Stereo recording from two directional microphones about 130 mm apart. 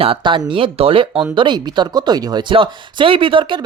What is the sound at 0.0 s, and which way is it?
Speech, 40° right (ahead or behind).